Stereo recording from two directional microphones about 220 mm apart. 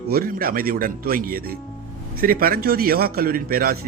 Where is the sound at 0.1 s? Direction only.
40° right (ahead or behind).